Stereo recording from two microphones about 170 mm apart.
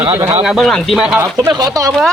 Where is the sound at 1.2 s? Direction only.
20° right (ahead or behind).